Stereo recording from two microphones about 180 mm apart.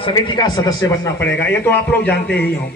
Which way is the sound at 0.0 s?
25° left (ahead or behind).